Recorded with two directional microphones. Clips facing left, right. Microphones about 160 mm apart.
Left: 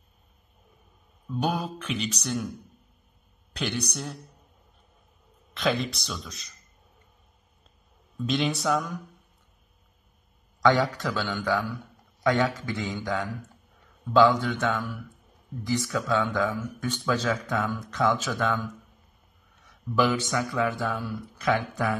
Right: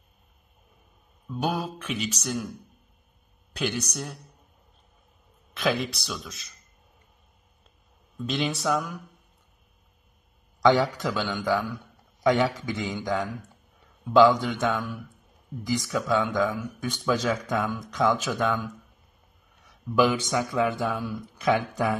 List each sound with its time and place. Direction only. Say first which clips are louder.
1.3 s mantra: even; 5° right (ahead or behind)
3.5 s mantra: right 1 dB; 5° right (ahead or behind)
5.5 s mantra: even; centre (ahead or behind)
8.3 s mantra: left 1 dB; centre (ahead or behind)
10.6 s speech: right 2 dB; 15° right (ahead or behind)